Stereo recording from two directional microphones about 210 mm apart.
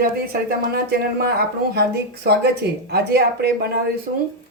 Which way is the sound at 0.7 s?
50° right (ahead or behind).